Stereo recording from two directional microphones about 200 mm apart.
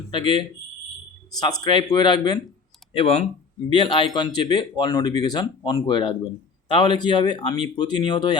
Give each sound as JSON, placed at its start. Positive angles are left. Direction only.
{"t": 0.1, "sound": "speech", "side_deg": 25}